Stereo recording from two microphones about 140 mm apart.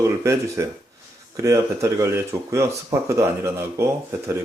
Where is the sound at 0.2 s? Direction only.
20° right (ahead or behind).